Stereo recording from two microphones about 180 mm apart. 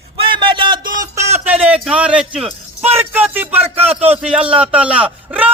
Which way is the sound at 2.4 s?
35° right (ahead or behind).